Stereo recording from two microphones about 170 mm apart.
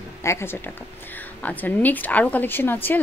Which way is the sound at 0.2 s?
15° left (ahead or behind).